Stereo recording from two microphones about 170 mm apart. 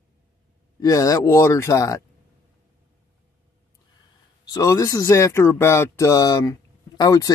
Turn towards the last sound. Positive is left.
turn(degrees=20)  # may be behind; listen again after turning